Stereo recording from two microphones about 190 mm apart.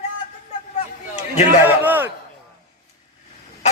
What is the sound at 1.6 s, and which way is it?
Speech, 10° right (ahead or behind).